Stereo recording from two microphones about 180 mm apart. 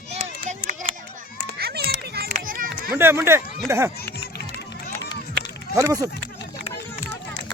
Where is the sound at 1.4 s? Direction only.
60° right (ahead or behind).